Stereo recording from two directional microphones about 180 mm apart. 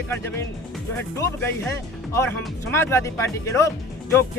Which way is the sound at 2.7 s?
15° left (ahead or behind).